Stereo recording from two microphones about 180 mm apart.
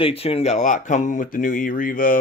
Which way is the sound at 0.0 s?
35° left (ahead or behind).